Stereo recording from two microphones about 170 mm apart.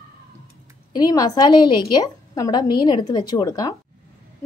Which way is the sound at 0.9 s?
20° left (ahead or behind).